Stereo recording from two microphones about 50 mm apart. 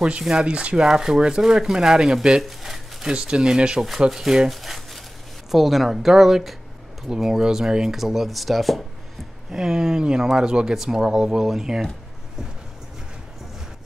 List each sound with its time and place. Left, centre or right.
0.2 s speech: centre
2.4 s a sound: centre
3.2 s speech: centre
4.5 s a sound: centre
5.5 s speech: centre
9.5 s speech: centre